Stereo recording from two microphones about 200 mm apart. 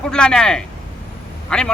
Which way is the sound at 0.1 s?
5° left (ahead or behind).